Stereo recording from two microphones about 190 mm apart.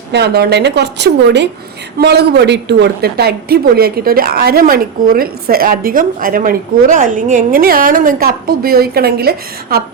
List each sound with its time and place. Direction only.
0.1 s a woman's voice: 60° right (ahead or behind)